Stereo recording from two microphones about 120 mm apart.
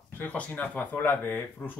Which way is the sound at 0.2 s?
15° left (ahead or behind).